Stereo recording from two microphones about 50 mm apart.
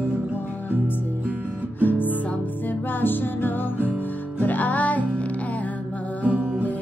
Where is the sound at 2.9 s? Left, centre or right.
Left.